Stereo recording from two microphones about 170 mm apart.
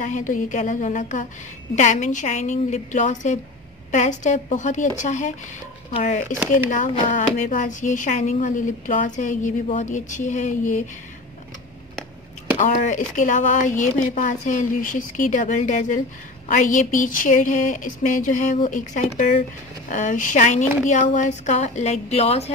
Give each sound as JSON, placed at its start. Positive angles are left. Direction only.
{"t": 0.0, "sound": "speech", "side_deg": 50}
{"t": 12.5, "sound": "speech", "side_deg": 45}